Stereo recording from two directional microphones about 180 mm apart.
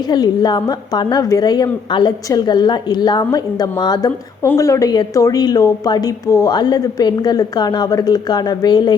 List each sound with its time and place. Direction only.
0.1 s a woman's voice: 25° left (ahead or behind)